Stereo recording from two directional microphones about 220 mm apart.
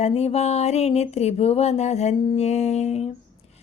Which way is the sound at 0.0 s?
30° left (ahead or behind).